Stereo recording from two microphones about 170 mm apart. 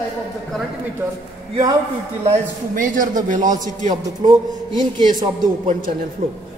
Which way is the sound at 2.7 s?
55° right (ahead or behind).